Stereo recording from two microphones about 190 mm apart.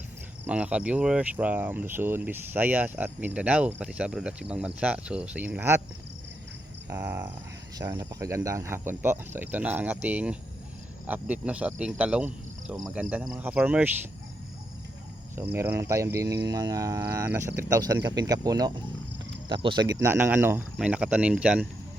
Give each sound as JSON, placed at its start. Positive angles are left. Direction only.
{"t": 0.4, "sound": "speech", "side_deg": -5}
{"t": 6.8, "sound": "cricket", "side_deg": -15}
{"t": 7.8, "sound": "speech", "side_deg": -15}
{"t": 15.5, "sound": "speech", "side_deg": -15}